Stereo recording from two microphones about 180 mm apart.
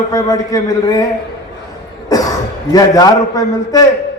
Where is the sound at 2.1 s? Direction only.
20° left (ahead or behind).